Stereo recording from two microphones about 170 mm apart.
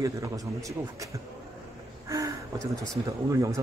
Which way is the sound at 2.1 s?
20° right (ahead or behind).